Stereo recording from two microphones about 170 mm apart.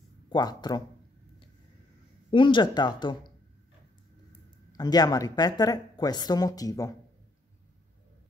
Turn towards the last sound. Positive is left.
turn(degrees=20)  # may be behind; listen again after turning